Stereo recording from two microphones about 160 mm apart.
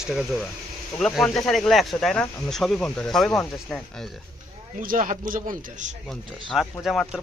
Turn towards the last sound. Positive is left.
turn(degrees=0)  # may be behind; listen again after turning